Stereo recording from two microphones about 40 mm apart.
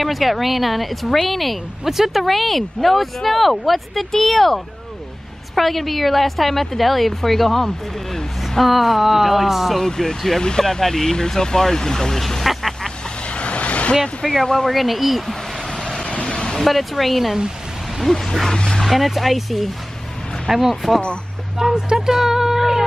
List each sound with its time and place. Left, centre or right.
0.0 s a woman's voice: centre
9.8 s speech: centre
13.4 s vehicle: left
13.9 s a woman's voice: centre
16.1 s a sound: left
16.5 s a woman's voice: centre
21.8 s a sound: centre